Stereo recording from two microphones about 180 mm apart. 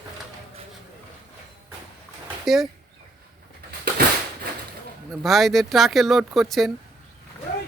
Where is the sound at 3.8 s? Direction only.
60° right (ahead or behind).